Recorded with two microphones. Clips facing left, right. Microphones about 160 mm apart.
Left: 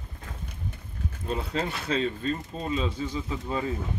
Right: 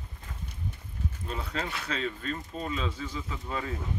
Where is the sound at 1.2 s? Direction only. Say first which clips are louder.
Left 6 dB; 30° left (ahead or behind).